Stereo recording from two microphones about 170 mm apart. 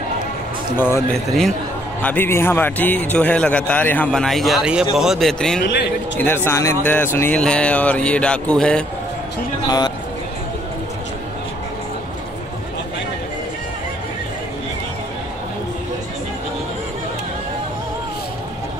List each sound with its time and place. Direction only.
0.7 s a man's voice: 15° left (ahead or behind)
1.1 s a man's voice: centre (ahead or behind)
6.1 s a man's voice: 15° left (ahead or behind)
9.7 s a man's voice: 25° left (ahead or behind)